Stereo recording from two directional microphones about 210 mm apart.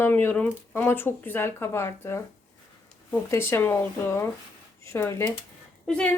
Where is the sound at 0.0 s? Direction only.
10° left (ahead or behind).